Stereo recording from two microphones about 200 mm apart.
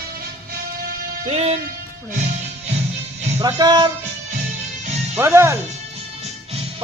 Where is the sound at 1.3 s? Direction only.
30° right (ahead or behind).